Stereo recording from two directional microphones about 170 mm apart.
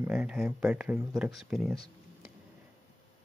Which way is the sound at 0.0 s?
5° right (ahead or behind).